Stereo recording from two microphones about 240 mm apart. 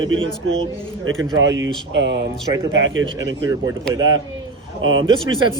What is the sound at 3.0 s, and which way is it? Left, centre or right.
Speech, centre.